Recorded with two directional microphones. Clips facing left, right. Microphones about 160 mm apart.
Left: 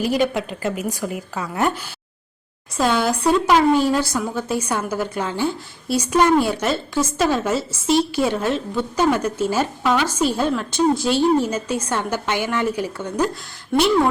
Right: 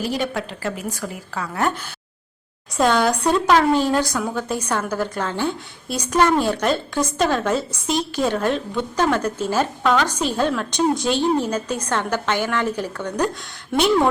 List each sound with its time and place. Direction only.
0.0 s speech: 15° left (ahead or behind)
2.7 s speech: centre (ahead or behind)